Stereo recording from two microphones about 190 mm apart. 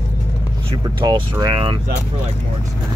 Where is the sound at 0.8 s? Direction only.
25° right (ahead or behind).